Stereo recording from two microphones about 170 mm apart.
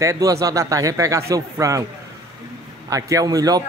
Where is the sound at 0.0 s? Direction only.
20° right (ahead or behind).